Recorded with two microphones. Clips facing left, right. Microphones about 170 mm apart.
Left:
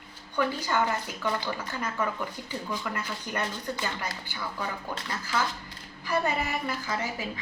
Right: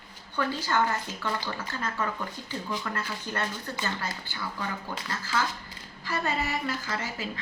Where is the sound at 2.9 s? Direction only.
15° left (ahead or behind).